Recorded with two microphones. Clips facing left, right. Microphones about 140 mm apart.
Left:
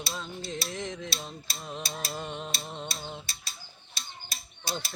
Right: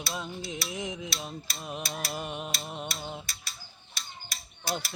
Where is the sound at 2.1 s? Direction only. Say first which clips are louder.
Right 1 dB; 10° right (ahead or behind).